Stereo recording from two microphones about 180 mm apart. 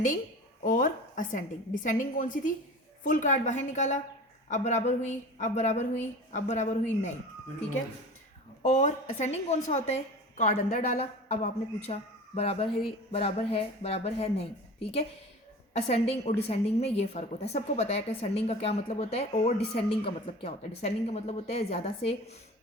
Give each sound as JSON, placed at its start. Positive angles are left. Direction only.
{"t": 0.6, "sound": "a woman's voice", "side_deg": 45}
{"t": 8.6, "sound": "a woman's voice", "side_deg": 40}
{"t": 11.9, "sound": "a woman's voice", "side_deg": 35}